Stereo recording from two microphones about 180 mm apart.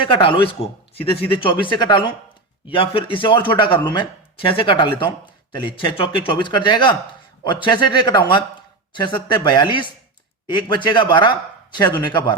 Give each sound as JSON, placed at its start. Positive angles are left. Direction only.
{"t": 0.1, "sound": "speech", "side_deg": 30}